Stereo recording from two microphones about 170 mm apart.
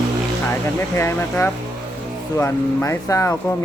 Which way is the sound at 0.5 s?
15° left (ahead or behind).